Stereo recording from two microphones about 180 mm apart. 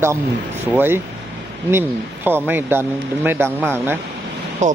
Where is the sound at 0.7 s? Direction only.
10° right (ahead or behind).